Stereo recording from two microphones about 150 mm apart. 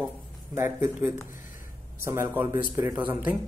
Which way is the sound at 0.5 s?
15° right (ahead or behind).